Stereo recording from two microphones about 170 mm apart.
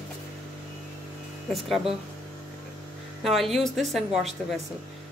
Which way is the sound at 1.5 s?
Centre (ahead or behind).